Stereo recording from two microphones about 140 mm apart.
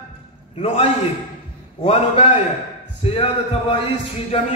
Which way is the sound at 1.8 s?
50° left (ahead or behind).